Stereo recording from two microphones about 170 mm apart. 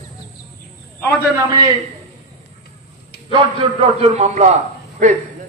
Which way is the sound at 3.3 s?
35° right (ahead or behind).